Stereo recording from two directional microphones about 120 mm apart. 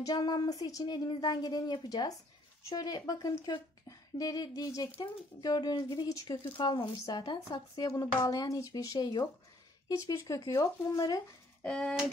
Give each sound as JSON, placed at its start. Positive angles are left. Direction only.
{"t": 0.0, "sound": "speech", "side_deg": 35}
{"t": 6.4, "sound": "speech", "side_deg": 45}
{"t": 11.6, "sound": "a sound", "side_deg": 10}